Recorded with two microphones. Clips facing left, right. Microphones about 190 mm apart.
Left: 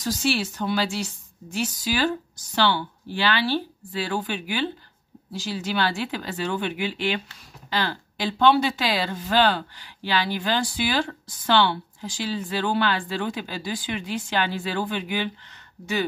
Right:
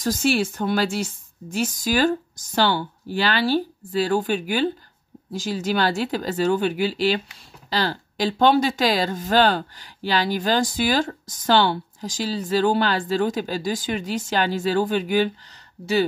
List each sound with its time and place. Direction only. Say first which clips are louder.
0.0 s a woman's voice: right 4 dB; 45° right (ahead or behind)